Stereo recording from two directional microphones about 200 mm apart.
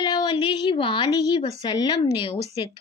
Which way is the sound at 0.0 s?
20° left (ahead or behind).